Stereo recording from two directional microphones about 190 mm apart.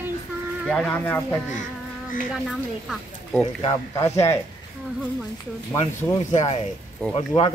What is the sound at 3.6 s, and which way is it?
Speech, 20° left (ahead or behind).